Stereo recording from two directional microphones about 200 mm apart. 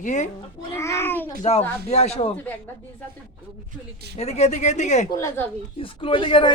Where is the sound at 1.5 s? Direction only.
30° left (ahead or behind).